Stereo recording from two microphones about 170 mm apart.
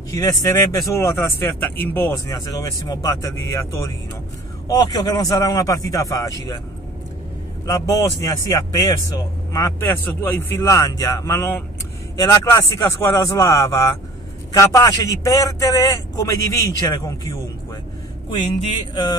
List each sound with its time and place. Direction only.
0.1 s speech: 20° left (ahead or behind)
7.6 s speech: 20° left (ahead or behind)